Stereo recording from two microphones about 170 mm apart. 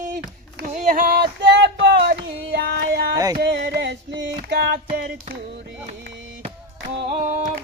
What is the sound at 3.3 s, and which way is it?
Music, 80° right.